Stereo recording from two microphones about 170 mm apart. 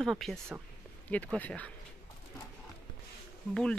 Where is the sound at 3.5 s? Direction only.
5° left (ahead or behind).